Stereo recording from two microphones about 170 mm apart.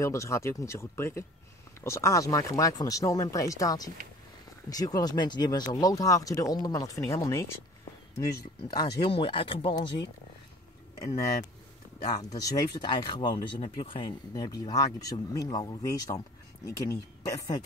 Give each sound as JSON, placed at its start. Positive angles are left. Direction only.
{"t": 0.0, "sound": "speech", "side_deg": 15}
{"t": 12.0, "sound": "speech", "side_deg": 20}